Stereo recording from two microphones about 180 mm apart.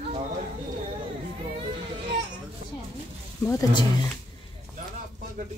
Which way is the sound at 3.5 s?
20° left (ahead or behind).